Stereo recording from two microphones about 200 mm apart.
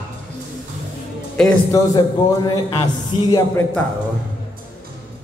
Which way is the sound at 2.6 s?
25° left (ahead or behind).